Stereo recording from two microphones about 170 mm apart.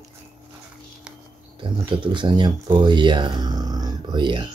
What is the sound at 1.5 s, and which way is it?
Speech, 30° right (ahead or behind).